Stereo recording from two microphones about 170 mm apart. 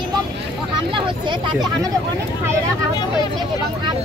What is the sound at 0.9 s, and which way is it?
Speech, 25° right (ahead or behind).